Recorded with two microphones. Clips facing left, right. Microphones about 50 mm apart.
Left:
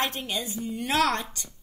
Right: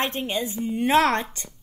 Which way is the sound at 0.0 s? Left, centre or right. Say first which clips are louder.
Right 4 dB; right.